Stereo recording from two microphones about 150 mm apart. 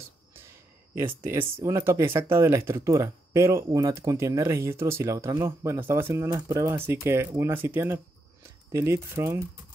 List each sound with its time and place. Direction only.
0.9 s speech: 15° right (ahead or behind)